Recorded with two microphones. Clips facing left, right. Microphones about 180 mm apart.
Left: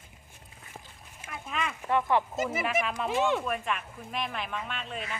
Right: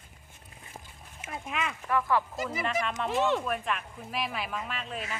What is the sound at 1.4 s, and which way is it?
Speech, 5° right (ahead or behind).